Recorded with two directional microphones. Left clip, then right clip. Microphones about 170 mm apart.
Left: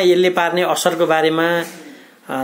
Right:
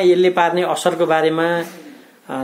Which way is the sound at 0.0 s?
Centre (ahead or behind).